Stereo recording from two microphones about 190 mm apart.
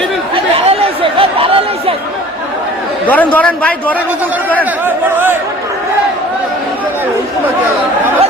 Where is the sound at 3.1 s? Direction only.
10° left (ahead or behind).